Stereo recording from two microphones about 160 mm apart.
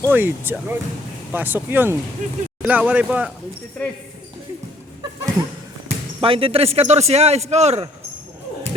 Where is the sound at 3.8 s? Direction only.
10° left (ahead or behind).